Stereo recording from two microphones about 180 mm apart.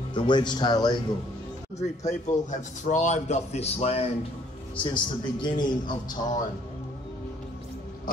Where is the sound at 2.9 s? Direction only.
40° left (ahead or behind).